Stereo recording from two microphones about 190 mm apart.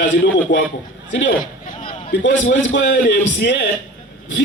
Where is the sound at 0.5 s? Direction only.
40° left (ahead or behind).